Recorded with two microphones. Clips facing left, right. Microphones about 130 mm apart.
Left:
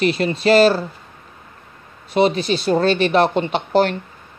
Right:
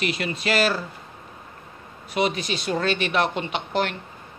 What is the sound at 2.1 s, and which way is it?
Speech, 30° left (ahead or behind).